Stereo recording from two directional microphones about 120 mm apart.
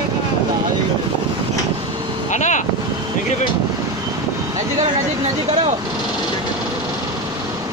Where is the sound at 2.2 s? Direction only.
90° left.